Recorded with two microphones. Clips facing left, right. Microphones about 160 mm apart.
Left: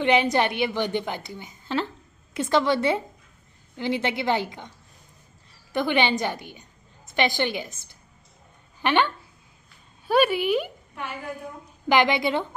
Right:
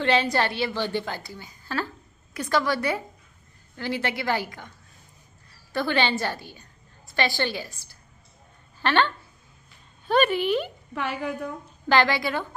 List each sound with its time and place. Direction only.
0.0 s a woman's voice: 20° left (ahead or behind)
11.9 s a woman's voice: 20° left (ahead or behind)